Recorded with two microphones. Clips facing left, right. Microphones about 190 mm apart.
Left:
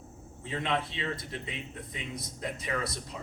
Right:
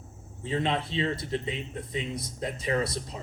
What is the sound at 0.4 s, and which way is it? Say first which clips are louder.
Speech: right 3 dB; 30° right (ahead or behind).